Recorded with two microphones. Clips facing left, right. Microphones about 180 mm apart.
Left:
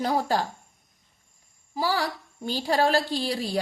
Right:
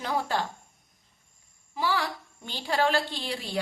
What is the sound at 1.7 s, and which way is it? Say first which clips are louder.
A woman's voice: left 2 dB; 35° left (ahead or behind).